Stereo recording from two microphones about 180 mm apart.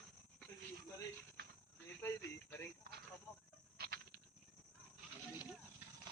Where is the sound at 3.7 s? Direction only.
60° right (ahead or behind).